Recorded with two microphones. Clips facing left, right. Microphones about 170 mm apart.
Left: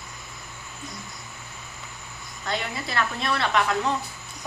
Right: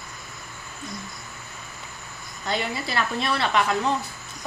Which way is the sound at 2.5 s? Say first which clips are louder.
Right 2 dB; 5° right (ahead or behind).